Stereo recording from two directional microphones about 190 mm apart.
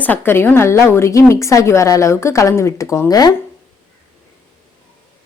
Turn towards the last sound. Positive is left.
turn(degrees=20)  # may be behind; listen again after turning